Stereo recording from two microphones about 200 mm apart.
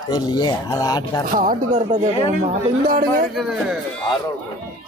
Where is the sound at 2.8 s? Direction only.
45° right (ahead or behind).